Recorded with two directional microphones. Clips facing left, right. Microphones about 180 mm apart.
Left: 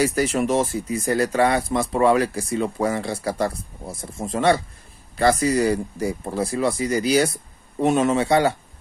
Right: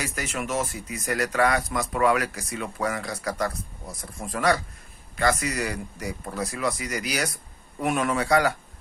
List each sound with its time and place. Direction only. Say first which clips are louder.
0.0 s speech: left 11 dB; 35° left (ahead or behind)